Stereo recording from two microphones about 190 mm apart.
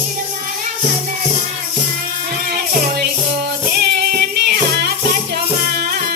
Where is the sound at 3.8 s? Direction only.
60° right (ahead or behind).